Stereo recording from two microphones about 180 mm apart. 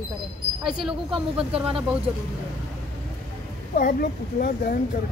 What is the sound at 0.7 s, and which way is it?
Speech, 5° right (ahead or behind).